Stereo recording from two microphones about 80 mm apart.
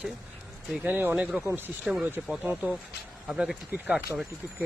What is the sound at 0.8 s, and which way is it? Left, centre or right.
Speech, right.